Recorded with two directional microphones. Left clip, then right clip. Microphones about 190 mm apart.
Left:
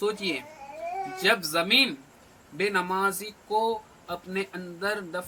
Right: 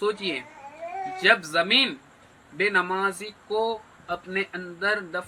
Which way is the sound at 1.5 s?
20° left (ahead or behind).